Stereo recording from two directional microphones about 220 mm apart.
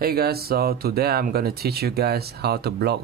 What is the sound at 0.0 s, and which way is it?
Speech, 45° right (ahead or behind).